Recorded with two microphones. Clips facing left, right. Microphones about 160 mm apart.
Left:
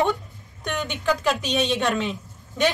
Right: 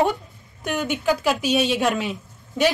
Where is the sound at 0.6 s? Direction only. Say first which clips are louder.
Right 4 dB; 5° right (ahead or behind).